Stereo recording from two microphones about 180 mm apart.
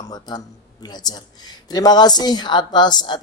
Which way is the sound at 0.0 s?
20° left (ahead or behind).